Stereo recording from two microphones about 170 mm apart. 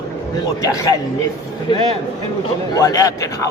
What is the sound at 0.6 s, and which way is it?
Speech, 20° left (ahead or behind).